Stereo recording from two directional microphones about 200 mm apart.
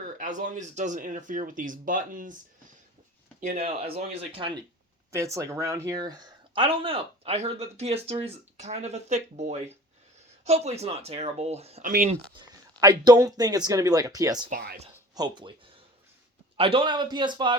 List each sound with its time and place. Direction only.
0.0 s speech: 40° right (ahead or behind)
3.4 s speech: 35° right (ahead or behind)
5.1 s speech: 15° right (ahead or behind); by 11.9 s 30° right (ahead or behind)
12.8 s speech: 20° right (ahead or behind)
14.5 s speech: 50° right (ahead or behind)
15.1 s speech: 20° right (ahead or behind)